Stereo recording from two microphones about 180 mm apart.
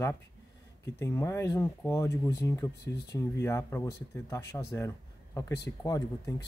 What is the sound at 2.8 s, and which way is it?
Speech, 65° left (ahead or behind).